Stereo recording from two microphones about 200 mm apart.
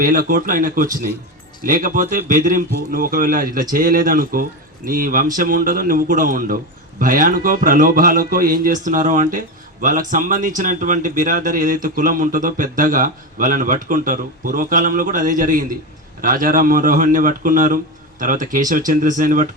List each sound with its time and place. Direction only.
0.0 s a man's voice: 45° right (ahead or behind)